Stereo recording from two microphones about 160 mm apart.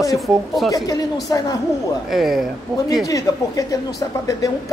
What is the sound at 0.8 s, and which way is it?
Speech, 20° left (ahead or behind).